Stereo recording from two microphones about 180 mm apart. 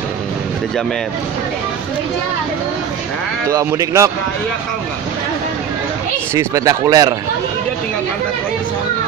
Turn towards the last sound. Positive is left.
turn(degrees=-20)  # may be behind; listen again after turning